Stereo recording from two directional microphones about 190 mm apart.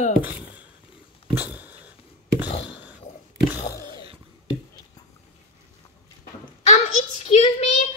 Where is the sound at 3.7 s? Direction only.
20° right (ahead or behind).